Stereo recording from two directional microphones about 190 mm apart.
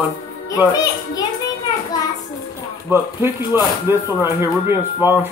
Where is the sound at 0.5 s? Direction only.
20° left (ahead or behind).